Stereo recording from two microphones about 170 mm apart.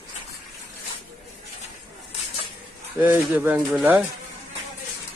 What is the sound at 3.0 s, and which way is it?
Speech, 10° right (ahead or behind).